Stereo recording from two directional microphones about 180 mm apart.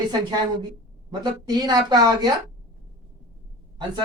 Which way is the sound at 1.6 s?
25° right (ahead or behind).